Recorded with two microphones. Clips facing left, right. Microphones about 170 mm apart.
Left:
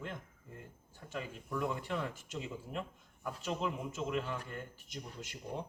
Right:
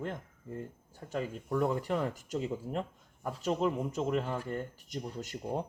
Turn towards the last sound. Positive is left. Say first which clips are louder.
# right 7 dB
turn(degrees=-45)  # may be behind; listen again after turning